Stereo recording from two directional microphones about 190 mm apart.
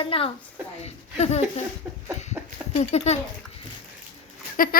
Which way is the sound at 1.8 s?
5° right (ahead or behind).